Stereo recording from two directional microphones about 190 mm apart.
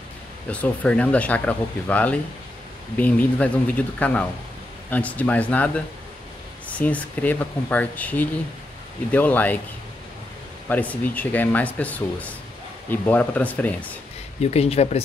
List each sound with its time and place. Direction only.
0.5 s speech: 5° left (ahead or behind)
10.7 s speech: 10° left (ahead or behind)
14.4 s speech: 35° left (ahead or behind)